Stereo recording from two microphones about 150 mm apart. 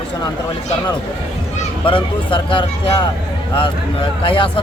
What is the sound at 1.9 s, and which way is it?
Speech, 35° left (ahead or behind).